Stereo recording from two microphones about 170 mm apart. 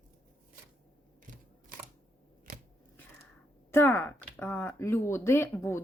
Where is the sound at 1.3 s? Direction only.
50° right (ahead or behind).